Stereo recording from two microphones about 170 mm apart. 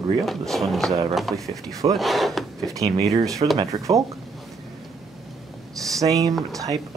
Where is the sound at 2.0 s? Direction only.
Centre (ahead or behind).